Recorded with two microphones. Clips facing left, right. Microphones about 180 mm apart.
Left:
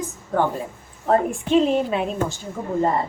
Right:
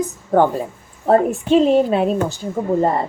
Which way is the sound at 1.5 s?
35° right (ahead or behind).